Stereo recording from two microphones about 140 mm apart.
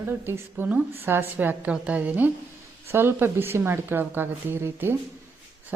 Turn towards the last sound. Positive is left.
turn(degrees=-15)  # may be behind; listen again after turning